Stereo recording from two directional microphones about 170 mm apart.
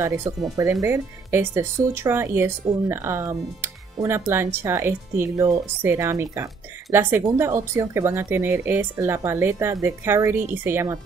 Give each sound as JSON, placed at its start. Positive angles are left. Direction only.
{"t": 0.0, "sound": "speech", "side_deg": -15}